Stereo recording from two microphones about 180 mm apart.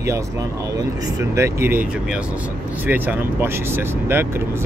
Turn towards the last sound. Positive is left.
turn(degrees=-10)  # may be behind; listen again after turning